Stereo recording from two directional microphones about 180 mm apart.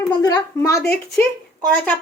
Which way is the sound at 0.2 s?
20° left (ahead or behind).